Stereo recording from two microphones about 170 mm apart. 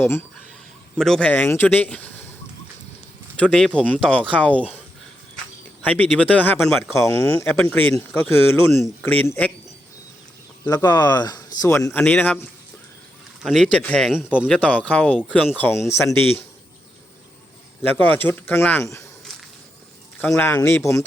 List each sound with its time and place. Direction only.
0.9 s speech: 5° left (ahead or behind)
3.3 s speech: 5° left (ahead or behind)
5.8 s speech: 10° left (ahead or behind)
6.9 s speech: 15° left (ahead or behind)
10.7 s speech: 20° left (ahead or behind)
13.4 s speech: centre (ahead or behind)
14.5 s speech: 5° left (ahead or behind)
18.0 s speech: 10° left (ahead or behind)
20.1 s speech: 10° left (ahead or behind)